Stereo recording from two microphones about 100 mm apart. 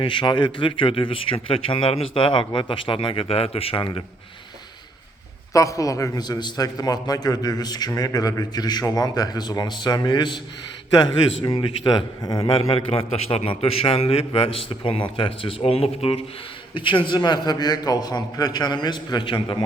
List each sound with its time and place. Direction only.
0.0 s speech: 55° left (ahead or behind)
5.5 s a man's voice: 35° left (ahead or behind); by 10.4 s 50° left (ahead or behind)
12.4 s a man's voice: 65° left (ahead or behind); by 16.2 s 85° left
16.7 s a man's voice: 55° left (ahead or behind)